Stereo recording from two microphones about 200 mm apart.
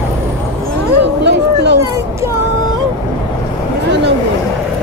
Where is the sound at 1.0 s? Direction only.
60° right (ahead or behind).